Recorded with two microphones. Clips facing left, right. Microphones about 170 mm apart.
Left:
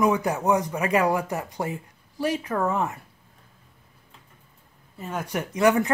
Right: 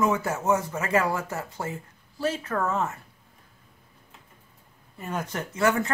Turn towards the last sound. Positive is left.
turn(degrees=15)  # may be behind; listen again after turning